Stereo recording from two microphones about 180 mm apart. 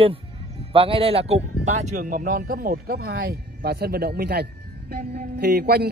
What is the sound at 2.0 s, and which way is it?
Speech, 50° right (ahead or behind).